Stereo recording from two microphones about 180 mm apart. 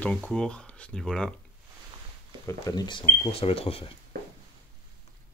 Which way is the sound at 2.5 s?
20° left (ahead or behind).